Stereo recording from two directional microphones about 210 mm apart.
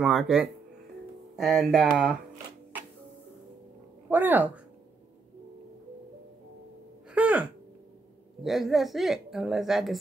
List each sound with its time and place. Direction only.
0.0 s speech: centre (ahead or behind)
4.1 s speech: 10° right (ahead or behind)
7.1 s a sound: 5° right (ahead or behind)
8.5 s speech: centre (ahead or behind)